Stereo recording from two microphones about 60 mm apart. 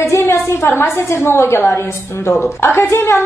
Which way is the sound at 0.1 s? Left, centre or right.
Left.